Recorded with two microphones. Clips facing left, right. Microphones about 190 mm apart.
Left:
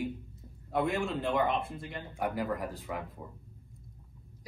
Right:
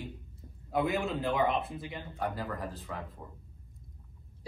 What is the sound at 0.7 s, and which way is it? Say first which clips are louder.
Speech: even; centre (ahead or behind).